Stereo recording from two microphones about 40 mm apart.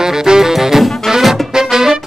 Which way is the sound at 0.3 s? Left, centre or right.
Centre.